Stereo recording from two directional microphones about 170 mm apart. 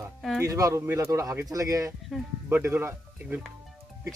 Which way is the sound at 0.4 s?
20° right (ahead or behind).